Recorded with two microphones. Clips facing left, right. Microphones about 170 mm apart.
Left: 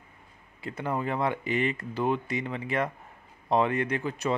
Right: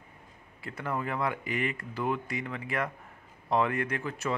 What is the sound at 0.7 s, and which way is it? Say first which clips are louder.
Speech: left 3 dB; 20° left (ahead or behind).